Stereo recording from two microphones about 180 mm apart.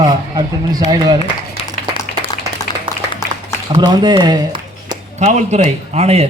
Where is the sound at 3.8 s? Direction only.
25° right (ahead or behind).